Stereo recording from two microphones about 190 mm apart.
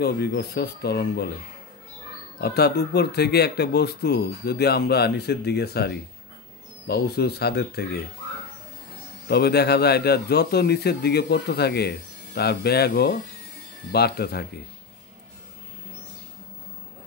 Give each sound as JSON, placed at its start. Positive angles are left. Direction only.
{"t": 0.0, "sound": "speech", "side_deg": 60}
{"t": 2.4, "sound": "speech", "side_deg": 60}
{"t": 9.3, "sound": "speech", "side_deg": 60}